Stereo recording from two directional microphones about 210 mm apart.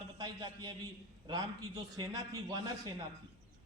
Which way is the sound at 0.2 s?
20° right (ahead or behind).